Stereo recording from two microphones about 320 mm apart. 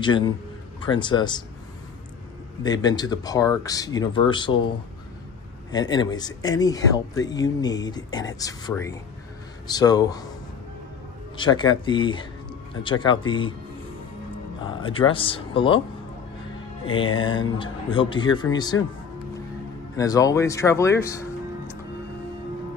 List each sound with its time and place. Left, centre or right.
0.0 s speech: centre
2.6 s speech: centre
5.7 s speech: centre
11.3 s speech: centre
14.6 s speech: centre
16.8 s speech: centre
20.0 s speech: centre